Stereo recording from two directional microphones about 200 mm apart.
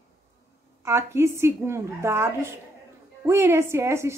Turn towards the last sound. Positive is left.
turn(degrees=-15)  # may be behind; listen again after turning